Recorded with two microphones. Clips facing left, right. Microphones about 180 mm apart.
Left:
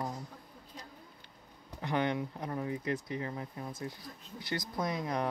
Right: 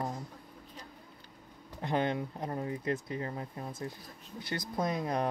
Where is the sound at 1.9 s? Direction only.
30° right (ahead or behind).